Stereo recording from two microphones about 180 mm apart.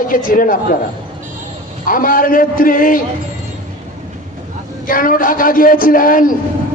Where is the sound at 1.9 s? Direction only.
50° left (ahead or behind).